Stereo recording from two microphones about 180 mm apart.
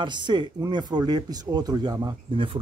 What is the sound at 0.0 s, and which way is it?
Speech, 25° right (ahead or behind).